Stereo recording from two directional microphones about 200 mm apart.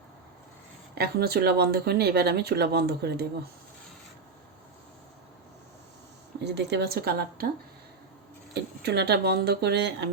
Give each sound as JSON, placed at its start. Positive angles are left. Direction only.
{"t": 0.9, "sound": "speech", "side_deg": -50}
{"t": 6.4, "sound": "speech", "side_deg": -60}
{"t": 8.8, "sound": "a woman's voice", "side_deg": -55}